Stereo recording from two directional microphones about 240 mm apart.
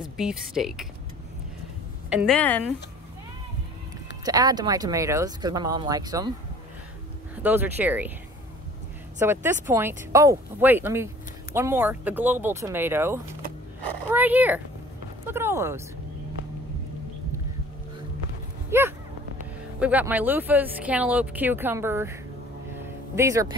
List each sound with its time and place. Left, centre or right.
0.0 s speech: centre
2.0 s speech: centre
4.2 s speech: centre
7.4 s speech: centre
9.2 s speech: centre
18.7 s a sound: centre
19.8 s speech: centre
23.1 s speech: centre